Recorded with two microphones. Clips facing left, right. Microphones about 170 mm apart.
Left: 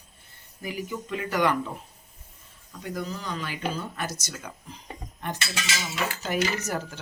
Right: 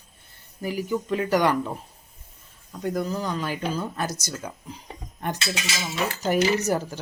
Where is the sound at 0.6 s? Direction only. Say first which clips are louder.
Right 6 dB; 35° right (ahead or behind).